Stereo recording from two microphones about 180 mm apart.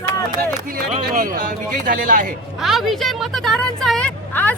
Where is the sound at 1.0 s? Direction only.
50° right (ahead or behind).